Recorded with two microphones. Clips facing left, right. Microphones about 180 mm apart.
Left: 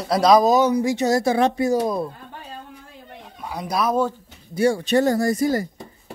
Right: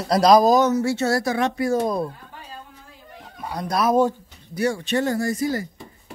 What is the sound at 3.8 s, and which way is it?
Speech, 10° right (ahead or behind).